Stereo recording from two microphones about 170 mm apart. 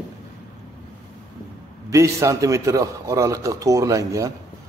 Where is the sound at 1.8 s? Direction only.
20° right (ahead or behind).